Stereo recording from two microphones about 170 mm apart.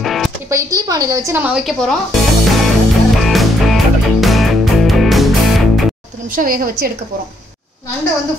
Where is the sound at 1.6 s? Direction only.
5° left (ahead or behind).